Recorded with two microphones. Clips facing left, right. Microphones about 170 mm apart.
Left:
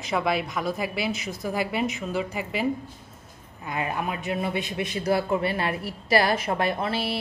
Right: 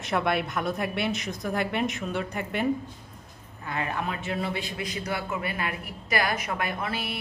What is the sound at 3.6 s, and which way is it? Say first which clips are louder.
A man's voice: left 2 dB; 20° left (ahead or behind).